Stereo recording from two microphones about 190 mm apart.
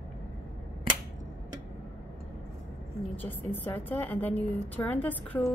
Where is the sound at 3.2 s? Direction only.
10° left (ahead or behind).